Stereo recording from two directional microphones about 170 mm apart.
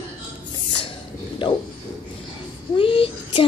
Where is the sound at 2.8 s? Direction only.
30° left (ahead or behind).